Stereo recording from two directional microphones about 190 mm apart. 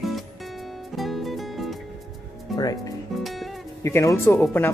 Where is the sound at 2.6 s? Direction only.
20° left (ahead or behind).